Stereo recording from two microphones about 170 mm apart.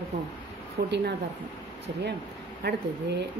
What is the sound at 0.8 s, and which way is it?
Speech, 75° right (ahead or behind).